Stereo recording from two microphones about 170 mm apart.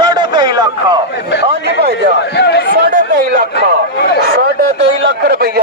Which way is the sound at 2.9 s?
55° right (ahead or behind).